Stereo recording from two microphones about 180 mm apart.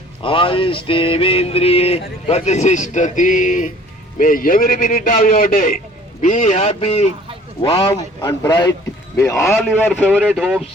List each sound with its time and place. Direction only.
0.2 s a sound: 30° left (ahead or behind); by 3.7 s 45° left (ahead or behind)
4.2 s a man's voice: 50° left (ahead or behind)
6.2 s a sound: 45° left (ahead or behind)
7.9 s a man's voice: 20° left (ahead or behind)
9.5 s a man's voice: centre (ahead or behind)
10.0 s speech: 5° right (ahead or behind)